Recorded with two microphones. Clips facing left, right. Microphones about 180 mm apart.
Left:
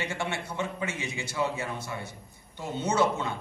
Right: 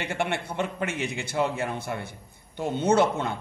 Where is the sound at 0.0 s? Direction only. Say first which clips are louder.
Right 4 dB; 60° right (ahead or behind).